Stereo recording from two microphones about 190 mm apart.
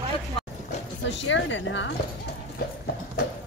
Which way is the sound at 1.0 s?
75° left (ahead or behind).